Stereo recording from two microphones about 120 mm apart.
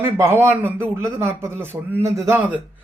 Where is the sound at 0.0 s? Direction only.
20° right (ahead or behind).